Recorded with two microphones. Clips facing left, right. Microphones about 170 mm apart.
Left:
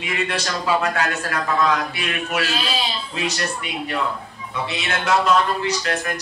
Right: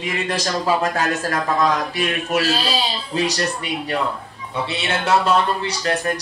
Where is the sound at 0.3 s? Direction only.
35° right (ahead or behind).